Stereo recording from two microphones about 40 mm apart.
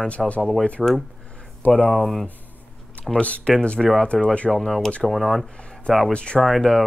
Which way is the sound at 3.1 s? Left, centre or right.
Left.